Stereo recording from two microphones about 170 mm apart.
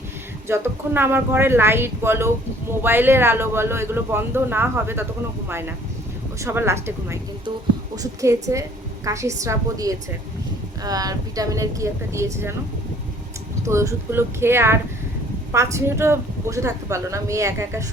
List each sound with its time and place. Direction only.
0.4 s speech: 15° right (ahead or behind)
13.6 s speech: 15° right (ahead or behind)